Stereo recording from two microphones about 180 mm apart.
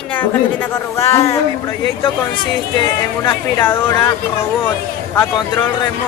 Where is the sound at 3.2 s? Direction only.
20° left (ahead or behind).